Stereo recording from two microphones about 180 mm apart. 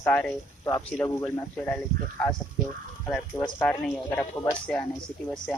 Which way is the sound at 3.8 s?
5° left (ahead or behind).